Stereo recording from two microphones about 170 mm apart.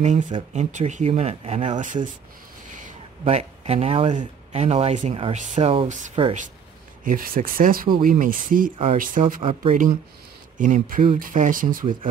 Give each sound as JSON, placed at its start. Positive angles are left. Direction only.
{"t": 0.0, "sound": "speech", "side_deg": -45}
{"t": 7.1, "sound": "speech", "side_deg": -55}
{"t": 9.4, "sound": "speech", "side_deg": -35}
{"t": 10.6, "sound": "speech", "side_deg": -50}